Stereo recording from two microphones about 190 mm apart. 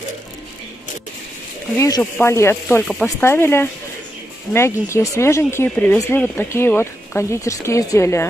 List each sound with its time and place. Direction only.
1.8 s speech: 15° left (ahead or behind)
2.9 s speech: centre (ahead or behind)